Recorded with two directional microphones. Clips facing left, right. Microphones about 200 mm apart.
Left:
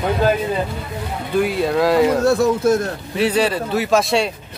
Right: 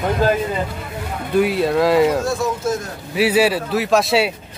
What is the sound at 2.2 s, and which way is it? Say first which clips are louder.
Speech: left 6 dB; 65° left (ahead or behind).